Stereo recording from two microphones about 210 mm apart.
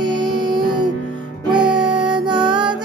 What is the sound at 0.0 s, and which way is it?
Music, 20° right (ahead or behind).